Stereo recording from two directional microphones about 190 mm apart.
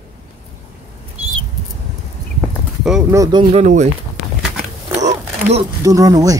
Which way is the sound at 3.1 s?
20° right (ahead or behind).